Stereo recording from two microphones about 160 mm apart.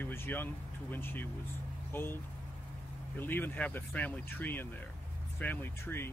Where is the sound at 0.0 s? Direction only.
15° left (ahead or behind).